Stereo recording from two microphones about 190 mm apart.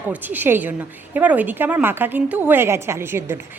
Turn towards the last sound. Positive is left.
turn(degrees=-10)  # may be behind; listen again after turning